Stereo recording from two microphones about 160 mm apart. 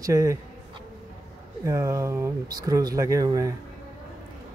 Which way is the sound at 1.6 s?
20° right (ahead or behind).